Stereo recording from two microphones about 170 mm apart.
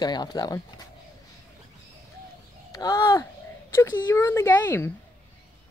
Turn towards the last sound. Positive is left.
turn(degrees=15)  # may be behind; listen again after turning